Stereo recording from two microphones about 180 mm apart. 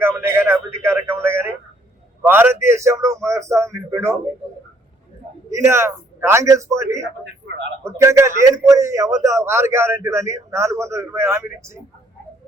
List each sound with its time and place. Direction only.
0.0 s a sound: 15° right (ahead or behind)
2.2 s a man's voice: 10° right (ahead or behind)
5.5 s a man's voice: 15° right (ahead or behind)